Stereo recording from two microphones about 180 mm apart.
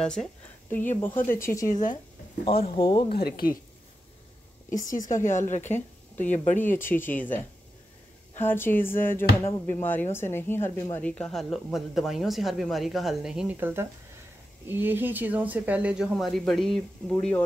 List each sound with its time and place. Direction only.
0.0 s speech: 5° left (ahead or behind)
1.7 s speech: 45° left (ahead or behind)
2.4 s speech: 30° left (ahead or behind)
3.1 s a woman's voice: 55° left (ahead or behind)
4.6 s speech: 45° left (ahead or behind)
6.8 s speech: 10° left (ahead or behind)
8.4 s a woman's voice: 10° left (ahead or behind)